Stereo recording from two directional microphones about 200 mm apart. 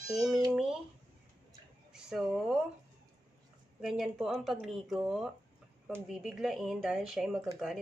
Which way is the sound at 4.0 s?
Centre (ahead or behind).